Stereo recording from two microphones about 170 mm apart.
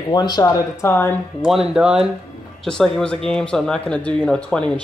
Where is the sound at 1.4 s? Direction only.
5° right (ahead or behind).